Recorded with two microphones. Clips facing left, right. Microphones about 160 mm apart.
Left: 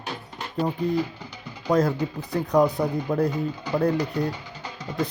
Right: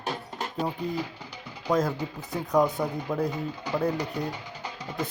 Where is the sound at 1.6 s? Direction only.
Centre (ahead or behind).